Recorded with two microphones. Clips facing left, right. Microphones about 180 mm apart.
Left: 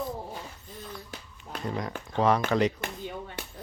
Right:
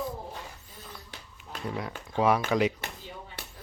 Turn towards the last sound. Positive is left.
turn(degrees=50)  # may be behind; listen again after turning